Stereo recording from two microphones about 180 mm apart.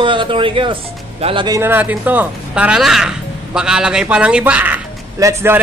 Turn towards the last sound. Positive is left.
turn(degrees=-15)  # may be behind; listen again after turning